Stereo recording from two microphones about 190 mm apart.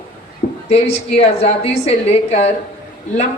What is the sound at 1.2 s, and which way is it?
A man's voice, 35° left (ahead or behind).